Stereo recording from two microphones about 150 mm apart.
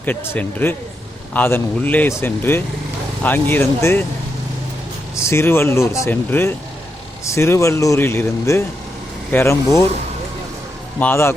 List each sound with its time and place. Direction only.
0.0 s speech: 10° left (ahead or behind)
5.1 s speech: 15° left (ahead or behind)
11.0 s speech: 15° left (ahead or behind)